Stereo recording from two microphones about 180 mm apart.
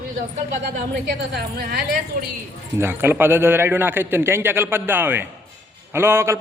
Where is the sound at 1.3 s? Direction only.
60° right (ahead or behind).